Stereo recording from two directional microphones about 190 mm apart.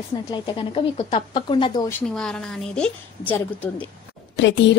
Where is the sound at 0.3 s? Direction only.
25° left (ahead or behind).